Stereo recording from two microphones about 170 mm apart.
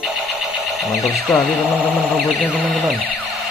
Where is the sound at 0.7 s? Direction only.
Centre (ahead or behind).